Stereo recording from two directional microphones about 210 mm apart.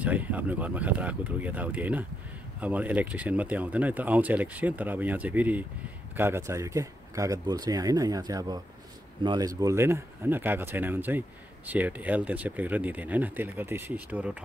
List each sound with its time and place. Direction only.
0.0 s speech: 5° right (ahead or behind)